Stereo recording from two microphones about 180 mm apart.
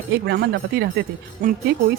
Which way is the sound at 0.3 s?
65° right (ahead or behind).